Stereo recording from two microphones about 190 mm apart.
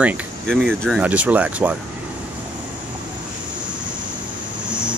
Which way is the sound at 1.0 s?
5° right (ahead or behind).